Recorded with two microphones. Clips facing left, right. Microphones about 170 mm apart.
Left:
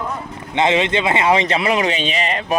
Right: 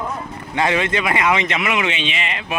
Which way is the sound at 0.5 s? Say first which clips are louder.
Left 3 dB; 20° left (ahead or behind).